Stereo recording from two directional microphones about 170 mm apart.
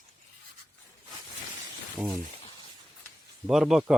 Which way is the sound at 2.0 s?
5° right (ahead or behind).